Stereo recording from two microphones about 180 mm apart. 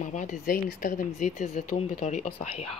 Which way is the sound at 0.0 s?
45° left (ahead or behind).